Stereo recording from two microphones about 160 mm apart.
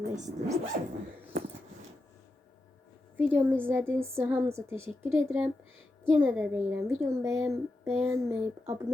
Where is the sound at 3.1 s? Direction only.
10° right (ahead or behind).